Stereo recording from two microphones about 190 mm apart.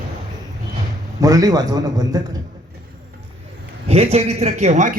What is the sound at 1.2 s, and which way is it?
A man's voice, 20° right (ahead or behind).